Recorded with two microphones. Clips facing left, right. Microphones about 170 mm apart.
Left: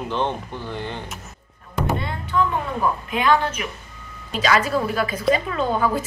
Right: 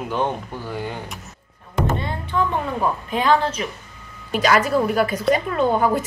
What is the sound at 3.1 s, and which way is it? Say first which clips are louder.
Speech: right 2 dB; 35° right (ahead or behind).